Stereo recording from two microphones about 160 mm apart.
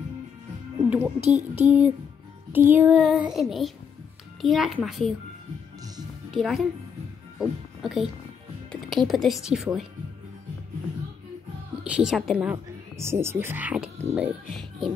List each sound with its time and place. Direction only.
0.8 s speech: 10° right (ahead or behind)
1.2 s child singing: 45° right (ahead or behind)
1.7 s a woman's voice: 10° right (ahead or behind)
6.3 s a woman's voice: centre (ahead or behind)
11.8 s a woman's voice: 5° right (ahead or behind)
12.9 s speech: 15° right (ahead or behind)